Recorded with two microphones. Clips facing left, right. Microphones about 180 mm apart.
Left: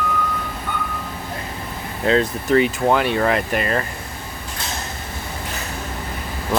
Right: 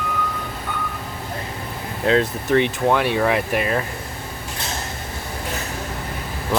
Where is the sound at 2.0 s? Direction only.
Centre (ahead or behind).